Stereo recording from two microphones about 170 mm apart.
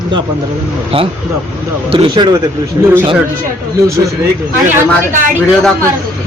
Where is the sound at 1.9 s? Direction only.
25° right (ahead or behind).